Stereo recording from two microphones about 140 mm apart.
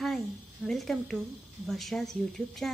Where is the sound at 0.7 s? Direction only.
Centre (ahead or behind).